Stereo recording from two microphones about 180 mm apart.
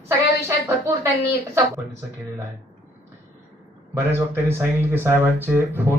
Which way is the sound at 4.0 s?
15° right (ahead or behind).